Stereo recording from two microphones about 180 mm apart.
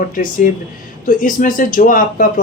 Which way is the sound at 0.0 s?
50° left (ahead or behind).